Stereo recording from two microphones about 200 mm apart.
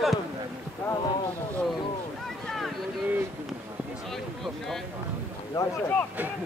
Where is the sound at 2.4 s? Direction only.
Centre (ahead or behind).